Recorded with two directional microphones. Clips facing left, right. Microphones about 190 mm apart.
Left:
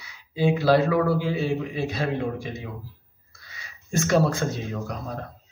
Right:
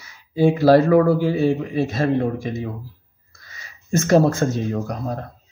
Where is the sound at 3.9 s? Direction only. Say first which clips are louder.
Right 6 dB; 45° right (ahead or behind).